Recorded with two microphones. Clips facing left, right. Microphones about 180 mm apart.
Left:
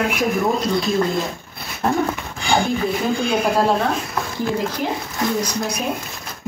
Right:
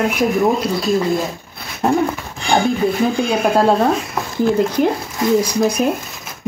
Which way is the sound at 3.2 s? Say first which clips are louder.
Right 3 dB; centre (ahead or behind).